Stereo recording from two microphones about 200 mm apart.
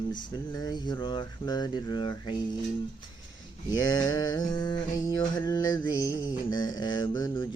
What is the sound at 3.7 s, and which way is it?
Mantra, 20° left (ahead or behind).